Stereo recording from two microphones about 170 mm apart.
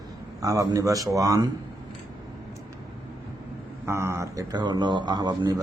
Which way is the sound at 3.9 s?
15° right (ahead or behind).